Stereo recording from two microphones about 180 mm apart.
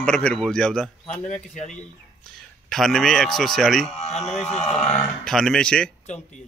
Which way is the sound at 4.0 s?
40° left (ahead or behind).